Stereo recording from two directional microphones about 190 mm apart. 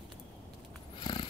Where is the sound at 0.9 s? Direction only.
25° left (ahead or behind).